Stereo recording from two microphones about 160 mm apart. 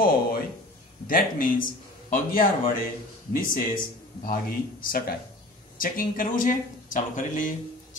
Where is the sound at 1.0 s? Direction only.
60° left (ahead or behind).